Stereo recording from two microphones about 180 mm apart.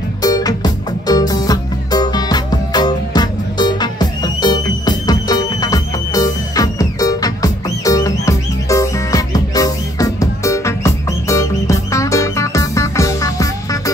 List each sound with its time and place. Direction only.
0.2 s music: 20° left (ahead or behind)